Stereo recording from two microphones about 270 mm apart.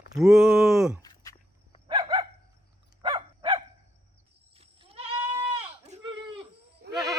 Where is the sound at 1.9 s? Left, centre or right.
Centre.